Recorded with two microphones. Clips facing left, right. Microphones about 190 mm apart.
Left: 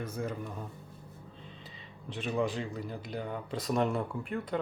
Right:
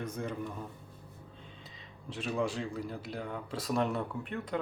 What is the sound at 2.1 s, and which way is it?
Speech, centre (ahead or behind).